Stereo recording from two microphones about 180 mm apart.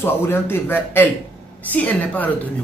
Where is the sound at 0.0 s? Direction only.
15° left (ahead or behind).